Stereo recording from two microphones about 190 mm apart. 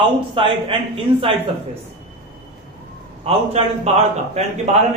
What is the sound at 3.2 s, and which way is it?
Speech, 35° right (ahead or behind).